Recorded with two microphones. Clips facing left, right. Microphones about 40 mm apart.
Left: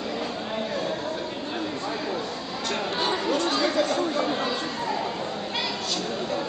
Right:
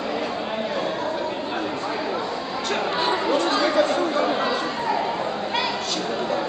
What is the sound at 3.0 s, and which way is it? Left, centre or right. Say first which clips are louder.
Chatter: right 3 dB; right.